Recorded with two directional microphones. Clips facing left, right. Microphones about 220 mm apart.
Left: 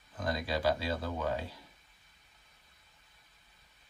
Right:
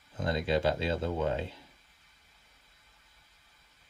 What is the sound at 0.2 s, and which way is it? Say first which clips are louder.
Speech: right 4 dB; 25° right (ahead or behind).